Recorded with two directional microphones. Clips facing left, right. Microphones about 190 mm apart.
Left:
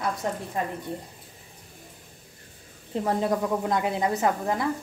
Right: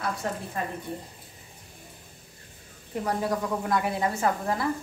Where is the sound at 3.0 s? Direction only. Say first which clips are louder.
Left 3 dB; 25° left (ahead or behind).